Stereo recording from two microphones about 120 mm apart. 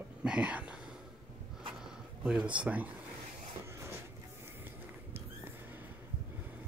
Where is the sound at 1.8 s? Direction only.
5° right (ahead or behind).